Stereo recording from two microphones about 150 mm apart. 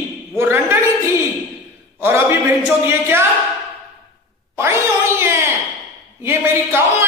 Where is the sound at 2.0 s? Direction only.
15° right (ahead or behind).